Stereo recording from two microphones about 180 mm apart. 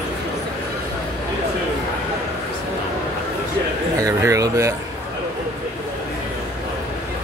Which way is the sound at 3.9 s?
20° right (ahead or behind).